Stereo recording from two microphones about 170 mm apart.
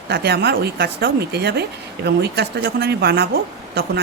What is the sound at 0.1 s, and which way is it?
Speech, 75° right (ahead or behind).